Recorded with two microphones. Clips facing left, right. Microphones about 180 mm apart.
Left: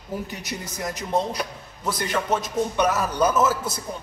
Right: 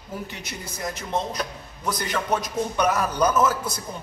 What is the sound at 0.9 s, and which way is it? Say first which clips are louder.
A man's voice: left 4 dB; 10° left (ahead or behind).